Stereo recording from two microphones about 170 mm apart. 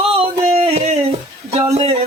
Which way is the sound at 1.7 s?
35° right (ahead or behind).